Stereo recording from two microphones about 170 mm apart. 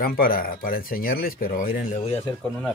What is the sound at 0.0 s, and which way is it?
Speech, 60° left (ahead or behind).